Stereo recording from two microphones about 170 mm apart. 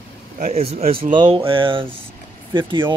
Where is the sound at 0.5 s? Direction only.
40° right (ahead or behind).